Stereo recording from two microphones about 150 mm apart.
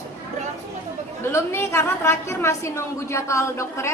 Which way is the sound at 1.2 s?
15° left (ahead or behind).